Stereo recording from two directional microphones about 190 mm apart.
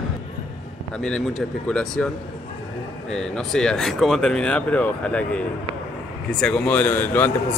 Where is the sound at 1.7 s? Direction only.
5° left (ahead or behind).